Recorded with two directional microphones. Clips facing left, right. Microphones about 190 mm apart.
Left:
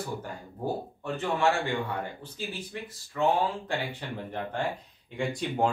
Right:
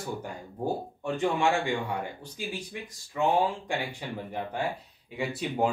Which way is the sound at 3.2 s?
15° right (ahead or behind).